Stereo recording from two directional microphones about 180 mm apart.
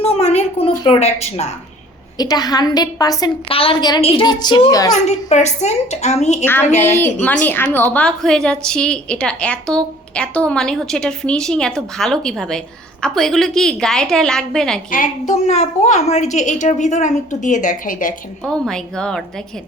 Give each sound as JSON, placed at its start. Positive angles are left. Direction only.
{"t": 0.0, "sound": "a woman's voice", "side_deg": 35}
{"t": 2.1, "sound": "a woman's voice", "side_deg": 20}
{"t": 3.5, "sound": "a woman's voice", "side_deg": 30}
{"t": 5.0, "sound": "a woman's voice", "side_deg": 40}
{"t": 6.4, "sound": "a woman's voice", "side_deg": 10}
{"t": 14.8, "sound": "a woman's voice", "side_deg": 50}
{"t": 18.4, "sound": "a woman's voice", "side_deg": 5}